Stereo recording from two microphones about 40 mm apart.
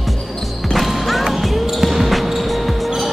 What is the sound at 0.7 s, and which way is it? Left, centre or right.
Music, centre.